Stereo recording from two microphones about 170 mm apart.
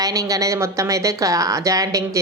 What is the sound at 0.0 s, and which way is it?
A woman's voice, 20° right (ahead or behind).